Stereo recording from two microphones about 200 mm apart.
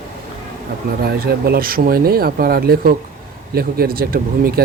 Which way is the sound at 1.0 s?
50° right (ahead or behind).